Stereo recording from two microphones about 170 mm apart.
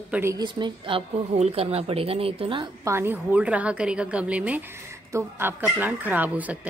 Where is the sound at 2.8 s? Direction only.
15° right (ahead or behind).